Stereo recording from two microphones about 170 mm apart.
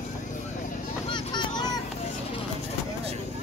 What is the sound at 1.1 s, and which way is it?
Vehicle, 25° left (ahead or behind).